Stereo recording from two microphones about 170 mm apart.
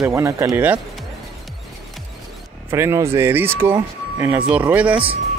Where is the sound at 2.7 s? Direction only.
15° right (ahead or behind).